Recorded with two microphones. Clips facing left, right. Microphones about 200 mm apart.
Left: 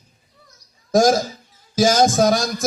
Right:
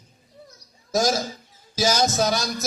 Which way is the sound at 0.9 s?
45° left (ahead or behind).